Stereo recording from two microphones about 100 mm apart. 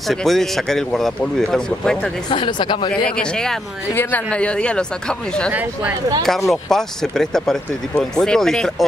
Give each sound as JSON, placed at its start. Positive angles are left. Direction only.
{"t": 0.1, "sound": "speech", "side_deg": 5}
{"t": 2.3, "sound": "speech", "side_deg": 55}
{"t": 3.2, "sound": "speech", "side_deg": 5}
{"t": 3.9, "sound": "speech", "side_deg": 25}
{"t": 4.3, "sound": "speech", "side_deg": 10}